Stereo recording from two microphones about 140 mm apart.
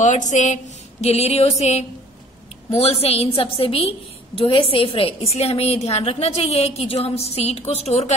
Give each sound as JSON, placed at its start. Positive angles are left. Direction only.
{"t": 0.0, "sound": "a woman's voice", "side_deg": 60}
{"t": 1.0, "sound": "a woman's voice", "side_deg": 50}